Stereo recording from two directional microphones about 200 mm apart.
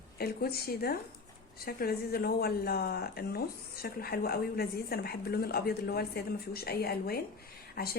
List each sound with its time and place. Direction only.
0.2 s speech: 50° left (ahead or behind)